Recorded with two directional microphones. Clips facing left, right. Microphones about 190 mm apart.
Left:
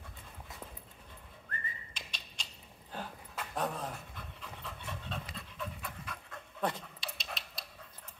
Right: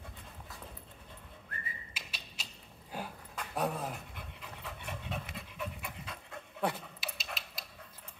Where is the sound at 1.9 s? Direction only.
5° right (ahead or behind).